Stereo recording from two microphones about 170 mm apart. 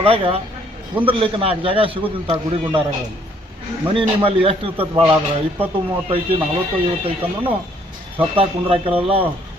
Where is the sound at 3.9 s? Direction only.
35° right (ahead or behind).